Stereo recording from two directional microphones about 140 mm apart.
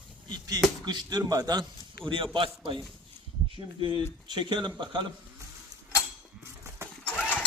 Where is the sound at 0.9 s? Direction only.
30° right (ahead or behind).